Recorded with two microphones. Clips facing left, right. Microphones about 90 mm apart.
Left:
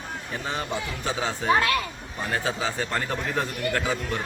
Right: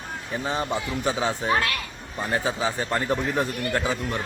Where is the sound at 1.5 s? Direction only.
25° left (ahead or behind).